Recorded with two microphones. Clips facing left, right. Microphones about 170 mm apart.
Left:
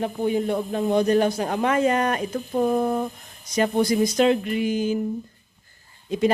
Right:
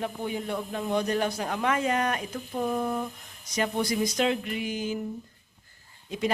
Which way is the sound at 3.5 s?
45° left (ahead or behind).